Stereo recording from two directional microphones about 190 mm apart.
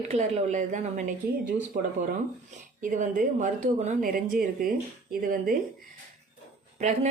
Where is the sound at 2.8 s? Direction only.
45° right (ahead or behind).